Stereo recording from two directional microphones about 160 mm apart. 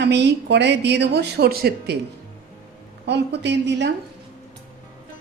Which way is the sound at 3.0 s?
90° right.